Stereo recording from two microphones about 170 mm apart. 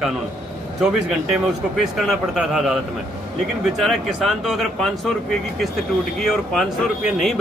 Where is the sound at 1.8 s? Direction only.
Centre (ahead or behind).